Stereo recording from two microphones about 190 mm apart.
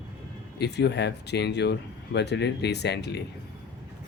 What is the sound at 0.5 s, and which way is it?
Speech, 65° left (ahead or behind).